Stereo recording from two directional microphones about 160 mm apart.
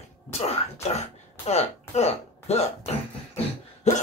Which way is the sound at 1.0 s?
40° left (ahead or behind).